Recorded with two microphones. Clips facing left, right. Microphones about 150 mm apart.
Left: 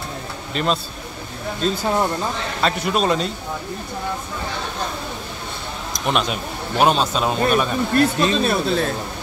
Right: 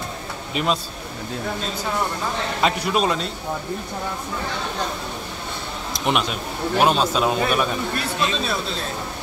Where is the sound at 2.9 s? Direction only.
Centre (ahead or behind).